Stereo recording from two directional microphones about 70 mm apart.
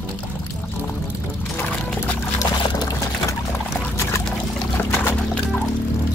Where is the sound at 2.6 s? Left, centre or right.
Left.